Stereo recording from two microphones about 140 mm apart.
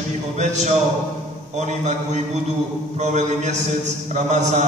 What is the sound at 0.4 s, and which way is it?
A man's voice, 55° right (ahead or behind).